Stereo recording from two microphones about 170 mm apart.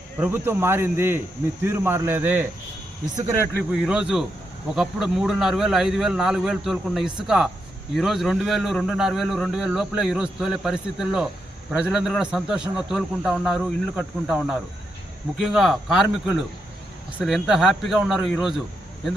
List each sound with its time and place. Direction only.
0.2 s speech: 10° right (ahead or behind)
3.7 s a man's voice: 5° right (ahead or behind)